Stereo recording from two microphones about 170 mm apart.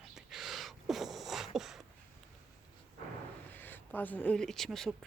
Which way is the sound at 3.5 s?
10° left (ahead or behind).